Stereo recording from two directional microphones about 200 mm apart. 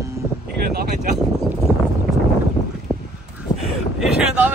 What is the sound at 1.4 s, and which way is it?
Clip-clop, 5° right (ahead or behind).